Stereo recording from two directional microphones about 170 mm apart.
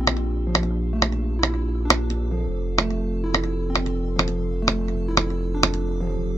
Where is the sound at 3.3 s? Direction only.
20° left (ahead or behind).